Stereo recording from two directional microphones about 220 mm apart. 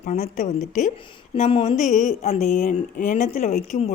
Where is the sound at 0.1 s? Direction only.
35° left (ahead or behind).